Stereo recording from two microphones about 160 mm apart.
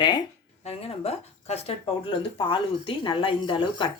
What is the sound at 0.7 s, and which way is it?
Speech, 40° left (ahead or behind).